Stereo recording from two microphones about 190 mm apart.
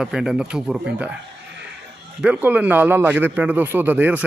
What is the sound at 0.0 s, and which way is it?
Speech, 5° right (ahead or behind).